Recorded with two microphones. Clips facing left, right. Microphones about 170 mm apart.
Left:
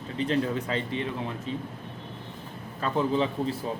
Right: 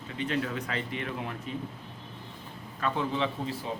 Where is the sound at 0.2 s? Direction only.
30° left (ahead or behind).